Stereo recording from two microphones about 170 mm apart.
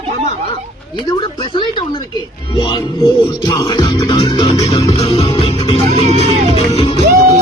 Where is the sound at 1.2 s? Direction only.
30° left (ahead or behind).